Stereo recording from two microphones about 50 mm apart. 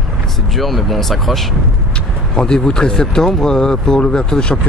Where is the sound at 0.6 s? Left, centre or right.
Centre.